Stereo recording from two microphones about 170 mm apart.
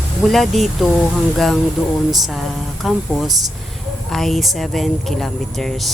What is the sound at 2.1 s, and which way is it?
A woman's voice, centre (ahead or behind).